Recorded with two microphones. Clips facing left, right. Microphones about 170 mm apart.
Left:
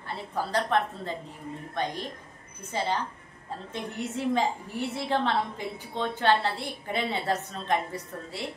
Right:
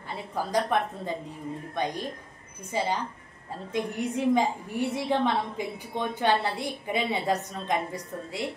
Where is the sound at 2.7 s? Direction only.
10° right (ahead or behind).